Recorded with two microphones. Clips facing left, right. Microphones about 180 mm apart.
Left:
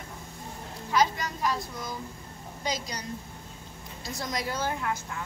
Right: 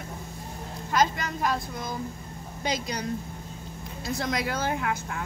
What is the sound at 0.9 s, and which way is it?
A woman's voice, 50° right (ahead or behind).